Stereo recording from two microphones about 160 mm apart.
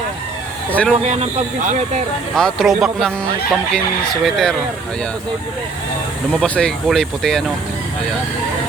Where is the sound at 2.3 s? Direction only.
Centre (ahead or behind).